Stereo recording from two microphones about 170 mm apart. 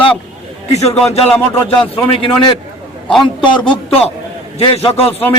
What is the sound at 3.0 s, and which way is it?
Speech, centre (ahead or behind).